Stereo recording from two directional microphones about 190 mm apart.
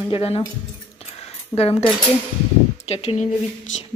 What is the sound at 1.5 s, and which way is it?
Speech, 30° left (ahead or behind).